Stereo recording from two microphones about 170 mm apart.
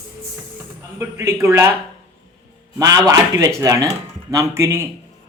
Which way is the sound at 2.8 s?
20° right (ahead or behind).